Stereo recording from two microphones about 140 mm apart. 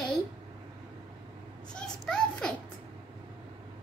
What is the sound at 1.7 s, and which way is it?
Children playing, 5° left (ahead or behind).